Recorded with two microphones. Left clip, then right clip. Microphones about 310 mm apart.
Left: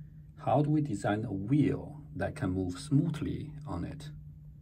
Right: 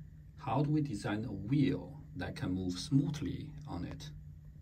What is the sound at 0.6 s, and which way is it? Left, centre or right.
Speech, centre.